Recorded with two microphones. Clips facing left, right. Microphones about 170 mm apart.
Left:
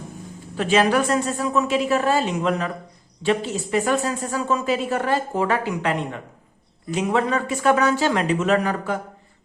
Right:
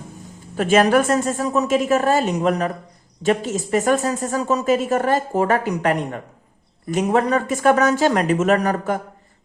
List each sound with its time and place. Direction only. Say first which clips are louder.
0.5 s speech: right 3 dB; 45° right (ahead or behind)